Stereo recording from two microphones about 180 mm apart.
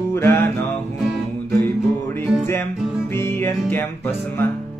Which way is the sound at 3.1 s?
15° left (ahead or behind).